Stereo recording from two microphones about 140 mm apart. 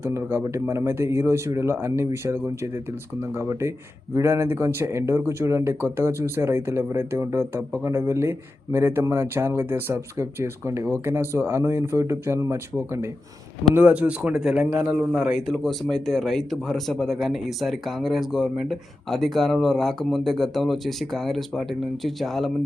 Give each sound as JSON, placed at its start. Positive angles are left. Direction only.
{"t": 0.0, "sound": "a man's voice", "side_deg": -20}